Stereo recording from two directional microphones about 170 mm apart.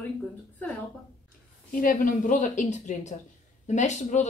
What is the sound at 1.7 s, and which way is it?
Speech, 55° left (ahead or behind).